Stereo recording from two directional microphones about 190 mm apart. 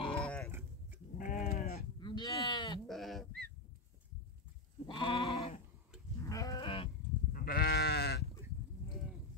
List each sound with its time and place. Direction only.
0.1 s livestock: 5° left (ahead or behind)
0.5 s a sound: 10° right (ahead or behind)
1.1 s sheep: 45° left (ahead or behind)
2.0 s livestock: 25° left (ahead or behind)
2.9 s goat: centre (ahead or behind)
4.8 s goat: 25° left (ahead or behind)
6.2 s goat: 20° left (ahead or behind)
7.3 s sheep: 50° left (ahead or behind)